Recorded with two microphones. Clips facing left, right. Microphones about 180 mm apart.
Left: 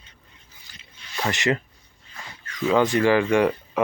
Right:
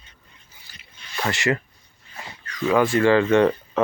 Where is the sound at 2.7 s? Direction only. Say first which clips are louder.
Right 1 dB; 20° left (ahead or behind).